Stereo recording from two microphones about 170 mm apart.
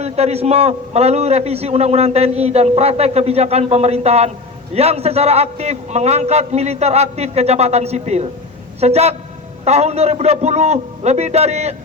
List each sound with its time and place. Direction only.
0.0 s a man's voice: 40° right (ahead or behind)